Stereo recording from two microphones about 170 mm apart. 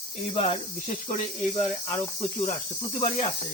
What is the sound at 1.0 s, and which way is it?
Speech, 35° left (ahead or behind).